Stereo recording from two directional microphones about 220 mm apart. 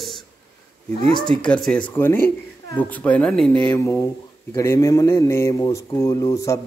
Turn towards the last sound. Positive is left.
turn(degrees=15)  # may be behind; listen again after turning